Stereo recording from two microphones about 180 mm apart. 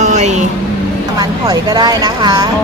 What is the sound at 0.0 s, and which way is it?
Vehicle, 40° right (ahead or behind).